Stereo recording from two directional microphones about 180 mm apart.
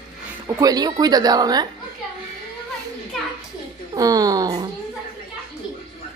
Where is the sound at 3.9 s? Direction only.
20° right (ahead or behind).